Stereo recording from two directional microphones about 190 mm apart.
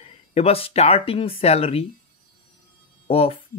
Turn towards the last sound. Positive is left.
turn(degrees=30)  # may be behind; listen again after turning